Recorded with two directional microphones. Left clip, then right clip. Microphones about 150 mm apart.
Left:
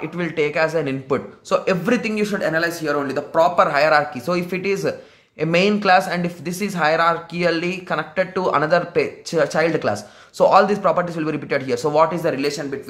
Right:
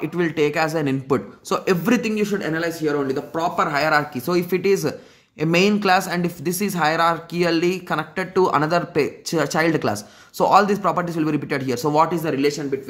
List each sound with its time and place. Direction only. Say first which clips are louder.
0.0 s speech: right 1 dB; 35° right (ahead or behind); by 12.6 s 15° right (ahead or behind)